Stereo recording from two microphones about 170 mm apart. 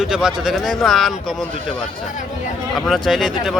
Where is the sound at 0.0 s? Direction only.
5° right (ahead or behind).